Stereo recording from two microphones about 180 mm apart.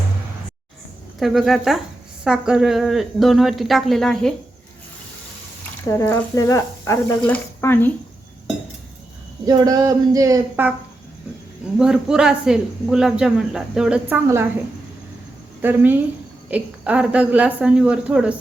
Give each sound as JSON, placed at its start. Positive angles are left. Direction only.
{"t": 1.2, "sound": "speech", "side_deg": 0}
{"t": 5.9, "sound": "speech", "side_deg": 15}
{"t": 9.5, "sound": "a sound", "side_deg": -20}
{"t": 11.8, "sound": "speech", "side_deg": -5}
{"t": 15.6, "sound": "speech", "side_deg": -10}